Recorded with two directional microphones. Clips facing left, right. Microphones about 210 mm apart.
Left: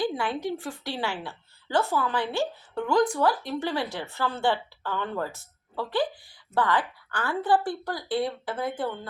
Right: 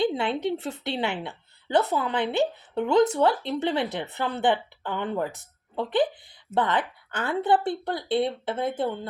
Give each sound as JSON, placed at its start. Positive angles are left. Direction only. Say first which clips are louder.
{"t": 0.0, "sound": "a woman's voice", "louder": "right 3 dB", "side_deg": -25}